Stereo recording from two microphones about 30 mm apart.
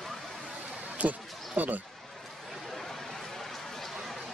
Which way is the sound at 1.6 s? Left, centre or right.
Right.